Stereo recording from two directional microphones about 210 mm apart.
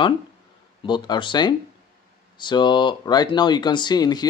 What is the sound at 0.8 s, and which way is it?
Speech, 20° left (ahead or behind).